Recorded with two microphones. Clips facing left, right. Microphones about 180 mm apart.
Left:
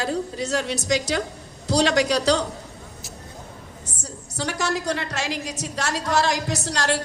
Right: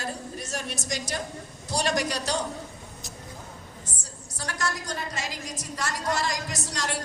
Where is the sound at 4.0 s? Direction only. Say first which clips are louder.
Left 13 dB; 70° left (ahead or behind).